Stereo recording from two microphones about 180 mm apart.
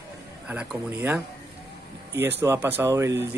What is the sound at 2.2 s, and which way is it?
Speech, 10° right (ahead or behind).